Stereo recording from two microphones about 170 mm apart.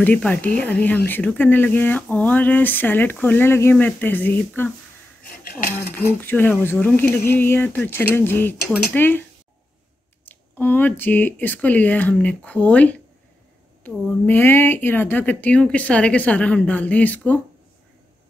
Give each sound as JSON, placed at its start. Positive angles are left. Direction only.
{"t": 0.0, "sound": "speech", "side_deg": 10}
{"t": 5.4, "sound": "speech", "side_deg": 60}
{"t": 6.2, "sound": "speech", "side_deg": 10}
{"t": 10.2, "sound": "speech", "side_deg": 10}